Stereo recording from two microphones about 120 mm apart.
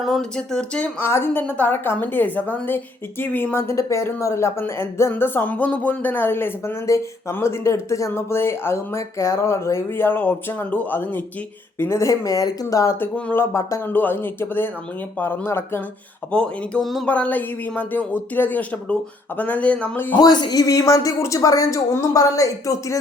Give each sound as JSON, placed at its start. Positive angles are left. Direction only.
{"t": 0.0, "sound": "a woman's voice", "side_deg": 0}
{"t": 13.1, "sound": "a woman's voice", "side_deg": 15}
{"t": 16.3, "sound": "speech", "side_deg": 5}
{"t": 17.1, "sound": "speech", "side_deg": 15}
{"t": 20.1, "sound": "a woman's voice", "side_deg": 35}